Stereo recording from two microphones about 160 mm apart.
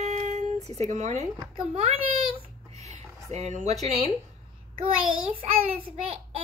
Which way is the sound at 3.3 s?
45° right (ahead or behind).